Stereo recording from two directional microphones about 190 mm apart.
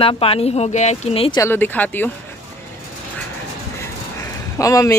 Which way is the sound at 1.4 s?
10° left (ahead or behind).